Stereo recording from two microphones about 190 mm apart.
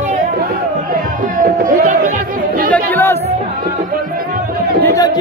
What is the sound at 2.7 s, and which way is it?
Music, 10° left (ahead or behind).